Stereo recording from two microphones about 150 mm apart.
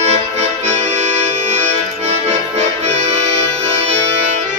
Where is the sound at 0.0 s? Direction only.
50° right (ahead or behind).